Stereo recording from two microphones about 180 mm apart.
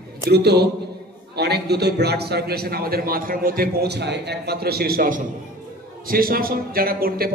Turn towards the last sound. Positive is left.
turn(degrees=-55)  # may be behind; listen again after turning